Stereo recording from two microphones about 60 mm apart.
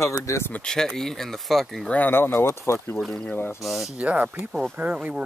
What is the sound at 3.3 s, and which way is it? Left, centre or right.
Speech, left.